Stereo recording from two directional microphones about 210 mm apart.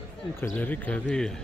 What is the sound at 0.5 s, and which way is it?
Speech, 10° left (ahead or behind).